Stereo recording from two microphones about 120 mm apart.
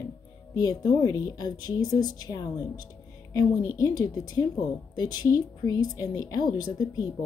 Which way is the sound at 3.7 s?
30° left (ahead or behind).